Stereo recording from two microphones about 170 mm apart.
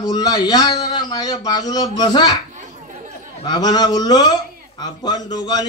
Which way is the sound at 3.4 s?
25° left (ahead or behind).